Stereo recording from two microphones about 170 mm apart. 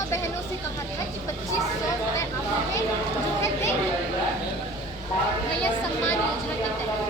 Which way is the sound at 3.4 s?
15° left (ahead or behind).